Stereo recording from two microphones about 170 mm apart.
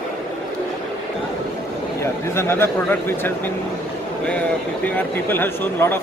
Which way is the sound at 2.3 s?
15° left (ahead or behind).